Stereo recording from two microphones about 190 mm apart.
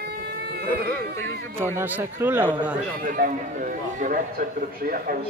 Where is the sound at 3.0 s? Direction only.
45° right (ahead or behind).